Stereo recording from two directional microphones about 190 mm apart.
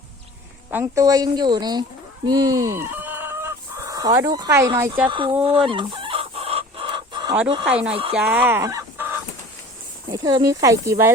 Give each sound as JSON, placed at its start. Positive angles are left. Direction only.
{"t": 0.7, "sound": "speech", "side_deg": -15}
{"t": 2.2, "sound": "chicken", "side_deg": -20}
{"t": 5.0, "sound": "speech", "side_deg": -25}
{"t": 5.4, "sound": "chicken", "side_deg": -30}
{"t": 7.4, "sound": "speech", "side_deg": -25}
{"t": 8.1, "sound": "speech", "side_deg": -10}
{"t": 10.1, "sound": "speech", "side_deg": -20}